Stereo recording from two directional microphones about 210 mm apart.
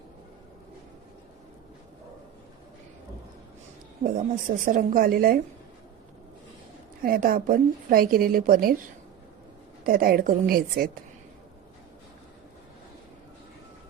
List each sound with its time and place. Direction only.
4.0 s speech: 40° right (ahead or behind)
7.0 s a woman's voice: 40° right (ahead or behind)
9.8 s a woman's voice: 45° right (ahead or behind)